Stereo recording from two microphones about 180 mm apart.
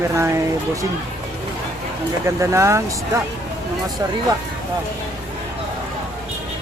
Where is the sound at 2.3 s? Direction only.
15° right (ahead or behind).